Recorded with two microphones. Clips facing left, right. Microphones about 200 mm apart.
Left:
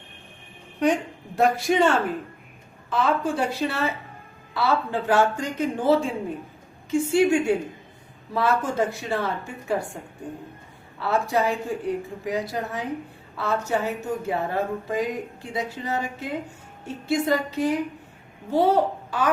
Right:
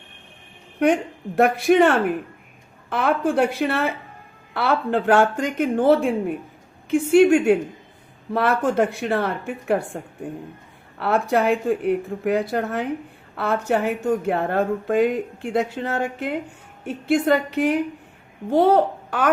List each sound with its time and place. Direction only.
1.4 s a woman's voice: 60° right (ahead or behind)
11.0 s a woman's voice: 60° right (ahead or behind)